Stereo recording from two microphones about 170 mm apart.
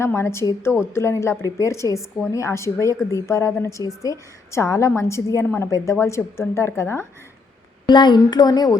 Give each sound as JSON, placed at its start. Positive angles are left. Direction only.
{"t": 0.0, "sound": "a woman's voice", "side_deg": 15}
{"t": 7.9, "sound": "a woman's voice", "side_deg": 25}